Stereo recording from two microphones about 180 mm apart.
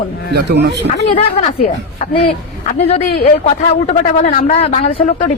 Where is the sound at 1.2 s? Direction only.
35° left (ahead or behind).